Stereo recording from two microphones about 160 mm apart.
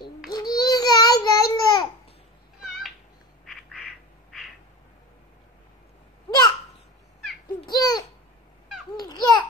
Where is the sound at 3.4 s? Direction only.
Centre (ahead or behind).